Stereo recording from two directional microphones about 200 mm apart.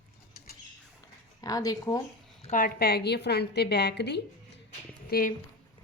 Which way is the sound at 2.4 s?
40° left (ahead or behind).